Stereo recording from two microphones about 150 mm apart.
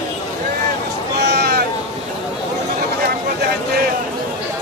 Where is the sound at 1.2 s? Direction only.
90° right.